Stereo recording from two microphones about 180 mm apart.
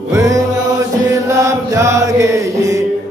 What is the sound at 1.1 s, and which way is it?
Chant, 15° right (ahead or behind).